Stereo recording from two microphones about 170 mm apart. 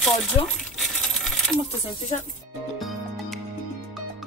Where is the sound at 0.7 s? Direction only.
Centre (ahead or behind).